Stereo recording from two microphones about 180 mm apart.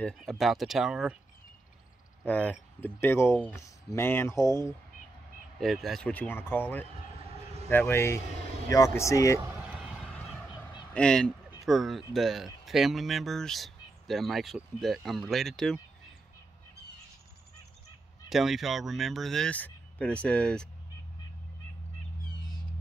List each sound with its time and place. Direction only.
0.0 s speech: centre (ahead or behind)
2.2 s speech: 10° left (ahead or behind)
5.6 s speech: centre (ahead or behind); by 9.4 s 15° left (ahead or behind)
9.4 s a sound: 15° right (ahead or behind)
9.8 s a sound: centre (ahead or behind)
10.9 s speech: 5° left (ahead or behind)
18.3 s speech: centre (ahead or behind)